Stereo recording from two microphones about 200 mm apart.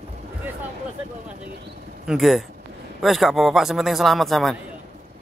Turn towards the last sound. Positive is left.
turn(degrees=0)  # may be behind; listen again after turning